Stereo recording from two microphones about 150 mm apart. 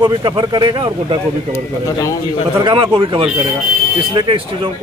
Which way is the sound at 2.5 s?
35° right (ahead or behind).